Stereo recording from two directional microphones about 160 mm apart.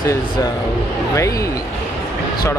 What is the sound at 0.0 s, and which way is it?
Speech, 20° left (ahead or behind).